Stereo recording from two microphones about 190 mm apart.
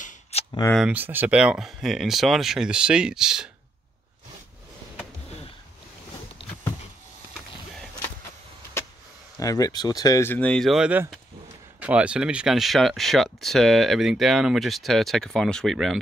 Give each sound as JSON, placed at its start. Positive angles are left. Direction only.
{"t": 0.0, "sound": "a sound", "side_deg": 35}
{"t": 0.7, "sound": "speech", "side_deg": -5}
{"t": 9.4, "sound": "speech", "side_deg": 20}